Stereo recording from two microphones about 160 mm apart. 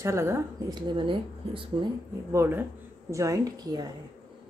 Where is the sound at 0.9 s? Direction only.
30° right (ahead or behind).